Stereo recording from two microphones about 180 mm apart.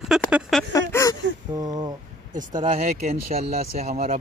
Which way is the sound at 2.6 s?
30° right (ahead or behind).